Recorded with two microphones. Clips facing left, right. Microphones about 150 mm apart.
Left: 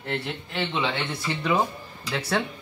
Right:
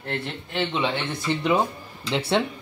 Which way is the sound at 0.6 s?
20° right (ahead or behind).